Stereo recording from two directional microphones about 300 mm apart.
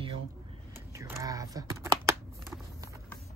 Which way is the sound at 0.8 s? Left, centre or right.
Centre.